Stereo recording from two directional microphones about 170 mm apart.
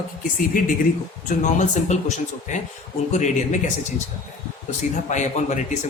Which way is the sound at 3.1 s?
45° left (ahead or behind).